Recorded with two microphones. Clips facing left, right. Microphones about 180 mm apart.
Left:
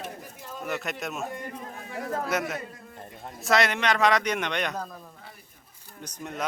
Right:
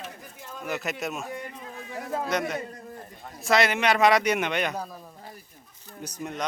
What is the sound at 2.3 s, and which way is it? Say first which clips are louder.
A man's voice: right 1 dB; 5° left (ahead or behind).